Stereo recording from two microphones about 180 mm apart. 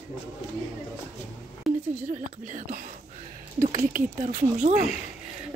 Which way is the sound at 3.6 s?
45° right (ahead or behind).